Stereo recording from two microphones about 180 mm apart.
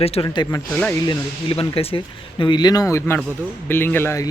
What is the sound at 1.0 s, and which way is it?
A man's voice, 30° left (ahead or behind).